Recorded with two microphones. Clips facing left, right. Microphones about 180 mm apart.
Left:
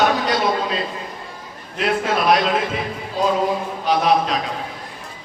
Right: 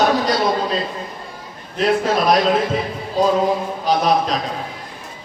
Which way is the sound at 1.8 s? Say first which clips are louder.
Right 3 dB; 40° right (ahead or behind).